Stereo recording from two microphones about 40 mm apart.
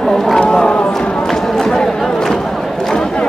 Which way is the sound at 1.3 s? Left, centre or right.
Centre.